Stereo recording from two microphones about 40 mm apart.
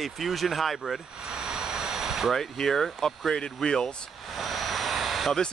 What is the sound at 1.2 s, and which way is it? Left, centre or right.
Vehicle, centre.